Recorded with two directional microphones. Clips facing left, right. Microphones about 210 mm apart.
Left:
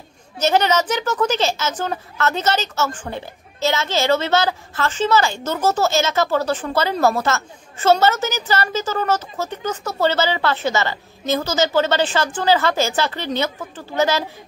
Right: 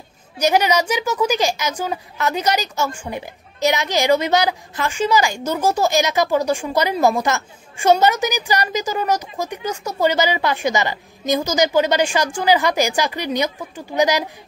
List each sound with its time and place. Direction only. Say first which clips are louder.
0.4 s a woman's voice: even; 10° right (ahead or behind)